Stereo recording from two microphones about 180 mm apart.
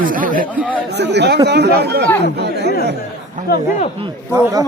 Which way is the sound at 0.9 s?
70° right (ahead or behind).